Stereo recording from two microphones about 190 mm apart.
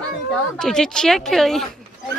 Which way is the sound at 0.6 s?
5° left (ahead or behind).